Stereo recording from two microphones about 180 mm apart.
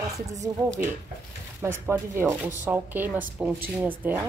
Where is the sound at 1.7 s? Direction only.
15° right (ahead or behind).